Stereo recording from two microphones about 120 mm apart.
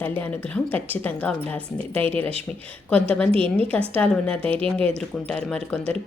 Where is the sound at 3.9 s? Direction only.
10° left (ahead or behind).